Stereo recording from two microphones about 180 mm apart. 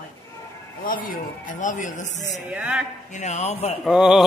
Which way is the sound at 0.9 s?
50° left (ahead or behind).